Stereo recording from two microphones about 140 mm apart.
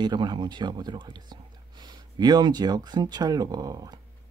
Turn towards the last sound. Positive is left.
turn(degrees=-25)  # may be behind; listen again after turning